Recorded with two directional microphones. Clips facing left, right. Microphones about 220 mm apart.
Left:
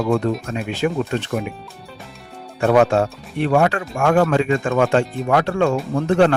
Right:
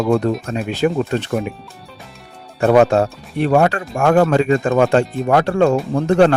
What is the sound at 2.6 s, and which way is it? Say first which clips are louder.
Speech: right 3 dB; 35° right (ahead or behind).